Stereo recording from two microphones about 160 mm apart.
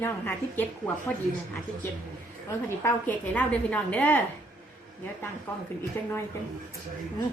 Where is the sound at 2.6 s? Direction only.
10° left (ahead or behind).